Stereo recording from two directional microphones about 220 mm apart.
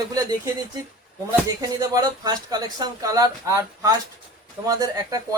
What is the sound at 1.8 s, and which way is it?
Speech, 15° right (ahead or behind).